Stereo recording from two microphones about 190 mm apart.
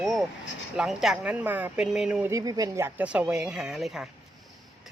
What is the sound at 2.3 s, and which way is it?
Speech, 20° right (ahead or behind).